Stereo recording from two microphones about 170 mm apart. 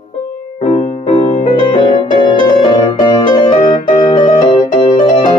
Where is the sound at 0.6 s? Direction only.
45° left (ahead or behind).